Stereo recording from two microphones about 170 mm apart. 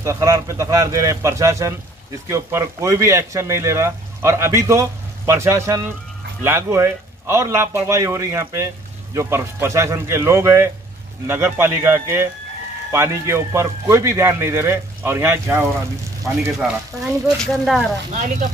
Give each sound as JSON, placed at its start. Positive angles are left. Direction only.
{"t": 0.0, "sound": "speech", "side_deg": -20}
{"t": 18.1, "sound": "speech", "side_deg": -50}